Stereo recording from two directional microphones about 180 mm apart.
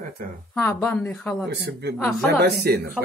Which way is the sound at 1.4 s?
70° right (ahead or behind).